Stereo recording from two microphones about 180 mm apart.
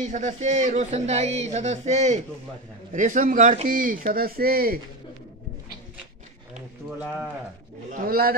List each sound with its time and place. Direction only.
0.0 s speech: 45° right (ahead or behind)
7.9 s speech: 55° right (ahead or behind)